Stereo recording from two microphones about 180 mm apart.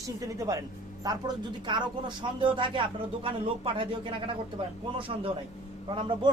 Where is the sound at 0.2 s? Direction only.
20° right (ahead or behind).